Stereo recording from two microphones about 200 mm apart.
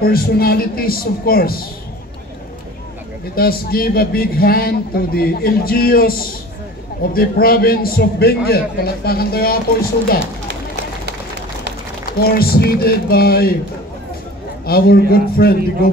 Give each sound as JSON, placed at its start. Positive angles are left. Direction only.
{"t": 0.0, "sound": "a man's voice", "side_deg": 50}
{"t": 3.3, "sound": "a man's voice", "side_deg": 50}
{"t": 12.1, "sound": "a man's voice", "side_deg": 50}
{"t": 14.7, "sound": "a man's voice", "side_deg": 50}